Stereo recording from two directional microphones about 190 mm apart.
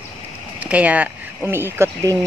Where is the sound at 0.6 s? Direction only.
5° right (ahead or behind).